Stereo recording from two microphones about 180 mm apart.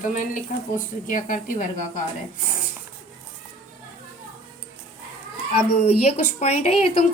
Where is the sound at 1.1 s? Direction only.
45° left (ahead or behind).